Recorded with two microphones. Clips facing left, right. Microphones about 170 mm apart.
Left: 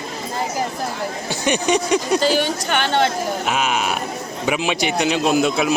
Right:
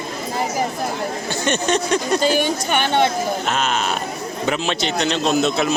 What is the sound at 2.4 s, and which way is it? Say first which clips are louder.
Speech: right 1 dB; 10° right (ahead or behind).